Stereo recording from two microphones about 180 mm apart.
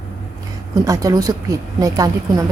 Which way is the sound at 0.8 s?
20° right (ahead or behind).